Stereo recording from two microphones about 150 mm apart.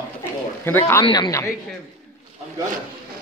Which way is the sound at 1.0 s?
30° left (ahead or behind).